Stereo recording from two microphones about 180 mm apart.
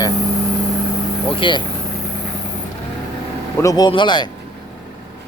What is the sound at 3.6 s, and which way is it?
Speech, 20° left (ahead or behind).